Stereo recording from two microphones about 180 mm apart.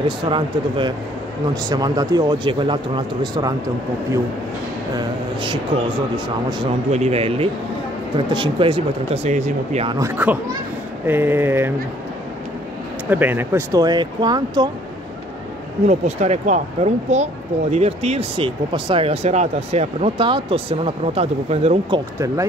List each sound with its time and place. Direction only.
0.2 s speech: 25° right (ahead or behind)
4.9 s a sound: 25° right (ahead or behind)
6.1 s speech: 30° right (ahead or behind)
9.8 s speech: 20° right (ahead or behind)
10.1 s speech: 10° right (ahead or behind)
13.1 s speech: 10° right (ahead or behind)
15.9 s speech: 40° right (ahead or behind)